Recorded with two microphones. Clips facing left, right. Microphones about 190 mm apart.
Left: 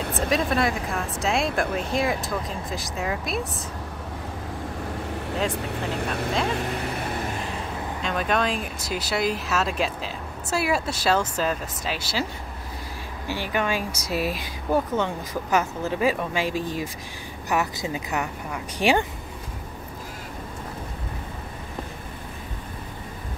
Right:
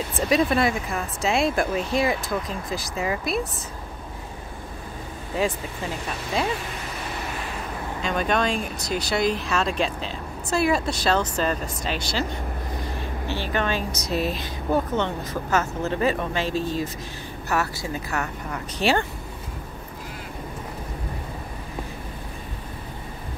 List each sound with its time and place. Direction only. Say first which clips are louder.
0.2 s speech: right 3 dB; centre (ahead or behind)
5.8 s speech: left 3 dB; 60° left (ahead or behind)
8.0 s speech: right 1 dB; centre (ahead or behind)
13.3 s speech: even; 10° left (ahead or behind)